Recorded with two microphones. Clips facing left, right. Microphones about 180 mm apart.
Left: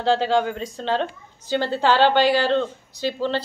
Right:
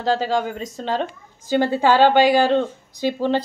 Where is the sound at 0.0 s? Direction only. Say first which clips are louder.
Left 1 dB; 5° right (ahead or behind).